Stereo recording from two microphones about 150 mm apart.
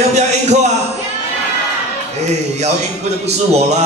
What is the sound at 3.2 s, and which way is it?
Speech, 45° right (ahead or behind).